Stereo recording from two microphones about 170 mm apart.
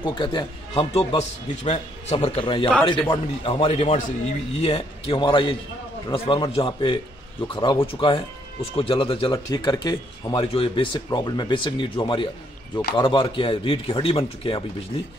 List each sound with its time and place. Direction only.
0.0 s speech: 25° left (ahead or behind)
1.1 s a man's voice: 40° left (ahead or behind); by 10.4 s 20° left (ahead or behind)
10.4 s a man's voice: 35° left (ahead or behind)